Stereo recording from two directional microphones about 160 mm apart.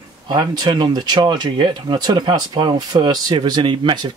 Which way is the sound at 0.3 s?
30° right (ahead or behind).